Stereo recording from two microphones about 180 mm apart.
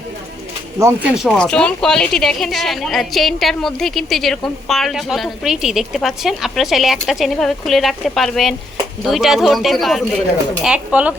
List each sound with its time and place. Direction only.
0.8 s speech: 15° right (ahead or behind)
1.1 s a woman's voice: centre (ahead or behind)